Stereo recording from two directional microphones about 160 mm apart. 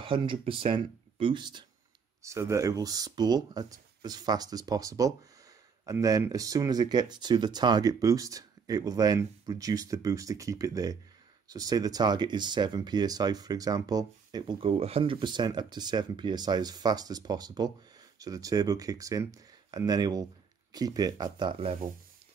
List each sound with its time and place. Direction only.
0.0 s speech: 30° right (ahead or behind)
2.2 s speech: 20° right (ahead or behind); by 21.7 s 35° right (ahead or behind)